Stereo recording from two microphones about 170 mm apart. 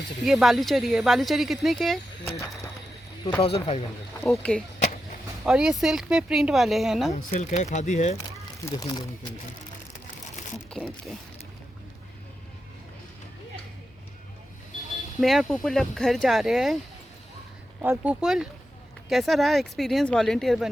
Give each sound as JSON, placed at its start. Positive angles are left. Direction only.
{"t": 0.3, "sound": "speech", "side_deg": 0}
{"t": 3.4, "sound": "speech", "side_deg": 35}
{"t": 4.3, "sound": "speech", "side_deg": 5}
{"t": 7.1, "sound": "speech", "side_deg": 45}
{"t": 8.6, "sound": "speech", "side_deg": 20}
{"t": 10.7, "sound": "speech", "side_deg": 5}
{"t": 15.2, "sound": "speech", "side_deg": 0}
{"t": 17.8, "sound": "speech", "side_deg": -5}